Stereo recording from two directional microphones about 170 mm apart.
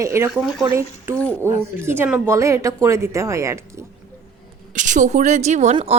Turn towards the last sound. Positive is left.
turn(degrees=-35)  # may be behind; listen again after turning